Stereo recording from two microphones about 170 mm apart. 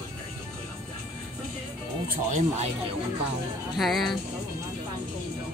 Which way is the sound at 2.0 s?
60° right (ahead or behind).